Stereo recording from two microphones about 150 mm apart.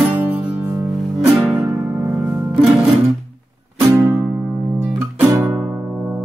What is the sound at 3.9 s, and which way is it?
Music, 20° right (ahead or behind).